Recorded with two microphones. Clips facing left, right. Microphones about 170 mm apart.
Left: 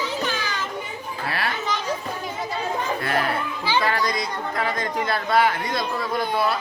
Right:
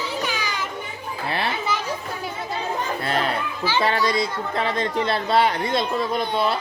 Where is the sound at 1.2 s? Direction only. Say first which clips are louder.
Right 2 dB; 25° right (ahead or behind).